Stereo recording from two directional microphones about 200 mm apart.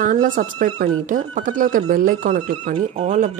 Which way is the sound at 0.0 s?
40° right (ahead or behind).